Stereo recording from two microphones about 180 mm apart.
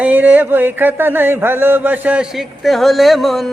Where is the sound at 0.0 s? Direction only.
10° right (ahead or behind).